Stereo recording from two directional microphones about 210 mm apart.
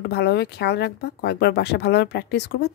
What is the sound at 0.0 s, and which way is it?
Speech, 50° left (ahead or behind).